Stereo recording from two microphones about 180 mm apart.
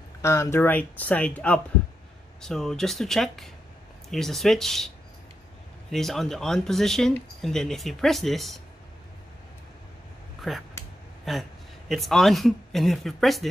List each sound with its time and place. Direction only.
0.2 s speech: 15° left (ahead or behind)
10.4 s speech: centre (ahead or behind)